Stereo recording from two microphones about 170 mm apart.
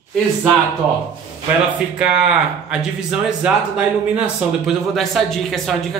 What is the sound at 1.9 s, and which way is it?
Speech, 5° right (ahead or behind).